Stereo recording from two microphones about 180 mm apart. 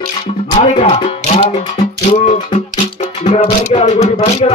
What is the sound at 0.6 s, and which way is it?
Music, 35° left (ahead or behind).